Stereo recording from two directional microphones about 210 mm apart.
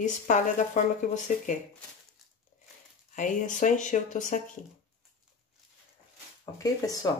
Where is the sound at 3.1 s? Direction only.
35° left (ahead or behind).